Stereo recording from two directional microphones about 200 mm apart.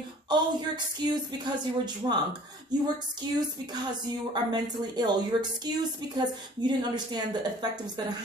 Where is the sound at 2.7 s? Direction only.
20° right (ahead or behind).